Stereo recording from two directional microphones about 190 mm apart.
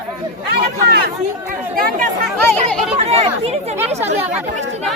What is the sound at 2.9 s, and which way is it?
Speech, 30° right (ahead or behind).